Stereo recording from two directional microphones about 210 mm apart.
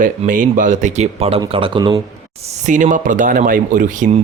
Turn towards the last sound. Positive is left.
turn(degrees=-40)  # may be behind; listen again after turning